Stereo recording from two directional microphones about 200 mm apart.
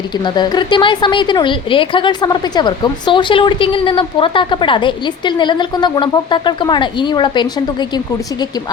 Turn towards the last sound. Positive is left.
turn(degrees=25)  # may be behind; listen again after turning